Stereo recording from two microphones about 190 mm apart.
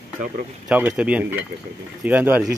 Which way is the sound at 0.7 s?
5° right (ahead or behind).